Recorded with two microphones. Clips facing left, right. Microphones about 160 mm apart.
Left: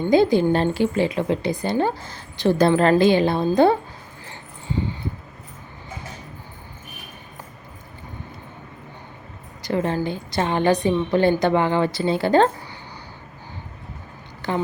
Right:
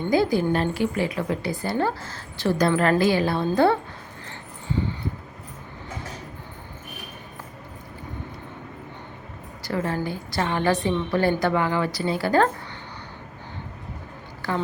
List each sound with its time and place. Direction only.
0.1 s speech: 25° left (ahead or behind)
9.6 s speech: 20° left (ahead or behind)
14.4 s a woman's voice: 20° left (ahead or behind)